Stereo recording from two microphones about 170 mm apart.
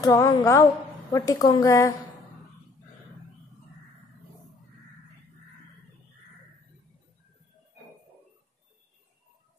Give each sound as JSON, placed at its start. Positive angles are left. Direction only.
{"t": 0.0, "sound": "a woman's voice", "side_deg": 20}